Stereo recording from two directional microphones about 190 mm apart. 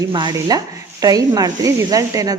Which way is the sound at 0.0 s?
25° right (ahead or behind).